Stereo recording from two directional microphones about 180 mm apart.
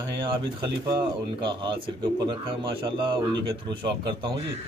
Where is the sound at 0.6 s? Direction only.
25° right (ahead or behind).